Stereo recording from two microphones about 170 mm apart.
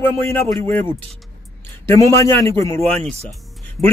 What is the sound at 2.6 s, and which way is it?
Speech, 35° right (ahead or behind).